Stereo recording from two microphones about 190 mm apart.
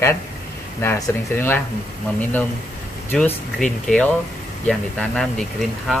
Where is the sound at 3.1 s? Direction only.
5° left (ahead or behind).